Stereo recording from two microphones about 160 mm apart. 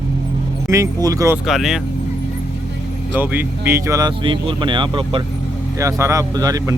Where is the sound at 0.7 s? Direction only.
20° right (ahead or behind).